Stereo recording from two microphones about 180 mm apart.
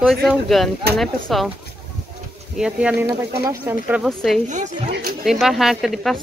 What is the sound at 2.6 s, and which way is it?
Speech, 5° right (ahead or behind).